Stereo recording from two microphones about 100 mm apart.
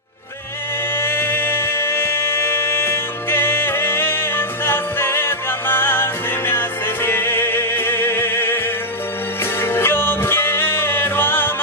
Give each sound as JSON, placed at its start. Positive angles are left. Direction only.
{"t": 0.9, "sound": "music", "side_deg": 25}
{"t": 9.6, "sound": "music", "side_deg": 25}